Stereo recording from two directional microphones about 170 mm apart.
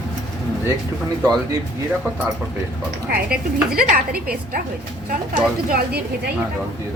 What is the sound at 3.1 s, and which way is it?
Speech, 60° right (ahead or behind).